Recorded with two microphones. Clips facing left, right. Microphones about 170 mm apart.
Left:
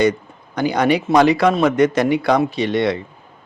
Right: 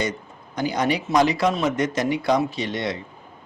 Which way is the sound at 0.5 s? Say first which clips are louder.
Left 6 dB; 65° left (ahead or behind).